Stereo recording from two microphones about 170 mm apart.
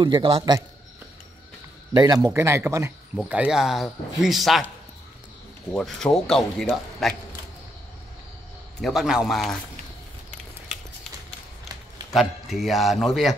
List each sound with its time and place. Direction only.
0.0 s a man's voice: 30° right (ahead or behind)
2.0 s speech: 20° right (ahead or behind); by 4.6 s centre (ahead or behind)
5.7 s speech: 5° left (ahead or behind)
8.8 s speech: centre (ahead or behind)
12.1 s speech: centre (ahead or behind)